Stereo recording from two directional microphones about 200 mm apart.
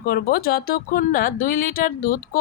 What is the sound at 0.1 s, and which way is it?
A woman's voice, 50° left (ahead or behind).